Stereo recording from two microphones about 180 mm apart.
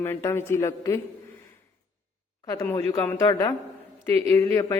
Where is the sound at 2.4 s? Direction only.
15° left (ahead or behind).